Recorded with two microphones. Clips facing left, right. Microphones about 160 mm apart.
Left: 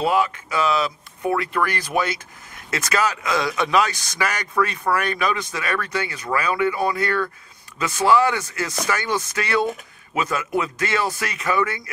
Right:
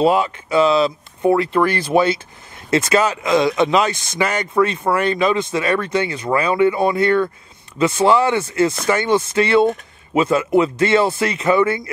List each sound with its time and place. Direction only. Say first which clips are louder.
0.0 s speech: right 5 dB; 25° right (ahead or behind)